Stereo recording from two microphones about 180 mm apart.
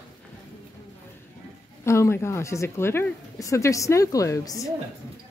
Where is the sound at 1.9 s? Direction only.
15° left (ahead or behind).